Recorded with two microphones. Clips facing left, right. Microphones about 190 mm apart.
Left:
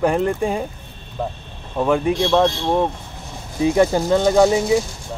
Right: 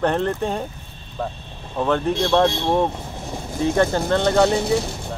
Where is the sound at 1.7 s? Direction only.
10° left (ahead or behind).